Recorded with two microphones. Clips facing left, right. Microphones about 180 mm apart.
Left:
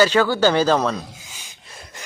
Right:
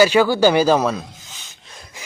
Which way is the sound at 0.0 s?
10° right (ahead or behind).